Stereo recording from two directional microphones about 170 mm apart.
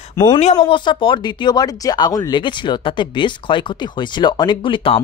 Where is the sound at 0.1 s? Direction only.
20° left (ahead or behind).